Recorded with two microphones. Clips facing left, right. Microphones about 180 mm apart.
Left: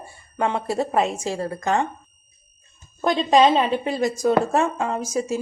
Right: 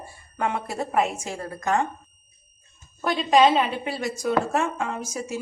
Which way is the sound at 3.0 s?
35° left (ahead or behind).